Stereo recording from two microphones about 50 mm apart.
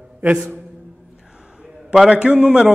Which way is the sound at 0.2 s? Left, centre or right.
Right.